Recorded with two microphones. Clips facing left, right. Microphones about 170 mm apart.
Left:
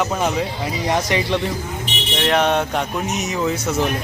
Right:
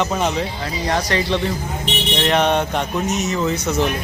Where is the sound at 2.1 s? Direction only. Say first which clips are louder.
Even; centre (ahead or behind).